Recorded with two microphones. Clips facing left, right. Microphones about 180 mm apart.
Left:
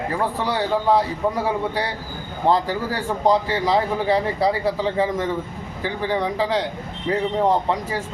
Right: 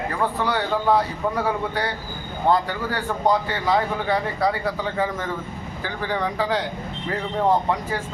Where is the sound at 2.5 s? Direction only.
30° left (ahead or behind).